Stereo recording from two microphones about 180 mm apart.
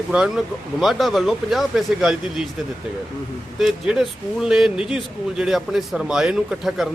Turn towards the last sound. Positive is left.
turn(degrees=0)  # may be behind; listen again after turning